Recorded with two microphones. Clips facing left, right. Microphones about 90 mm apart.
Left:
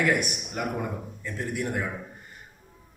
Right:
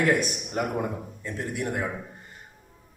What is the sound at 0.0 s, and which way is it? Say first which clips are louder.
A man's voice: right 2 dB; 30° right (ahead or behind).